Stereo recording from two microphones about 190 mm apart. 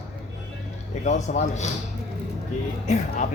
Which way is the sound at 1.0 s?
40° left (ahead or behind).